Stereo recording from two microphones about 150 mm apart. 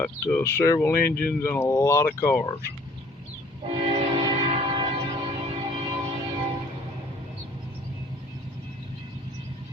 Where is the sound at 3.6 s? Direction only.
35° right (ahead or behind).